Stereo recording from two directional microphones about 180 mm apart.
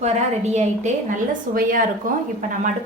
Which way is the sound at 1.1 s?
50° right (ahead or behind).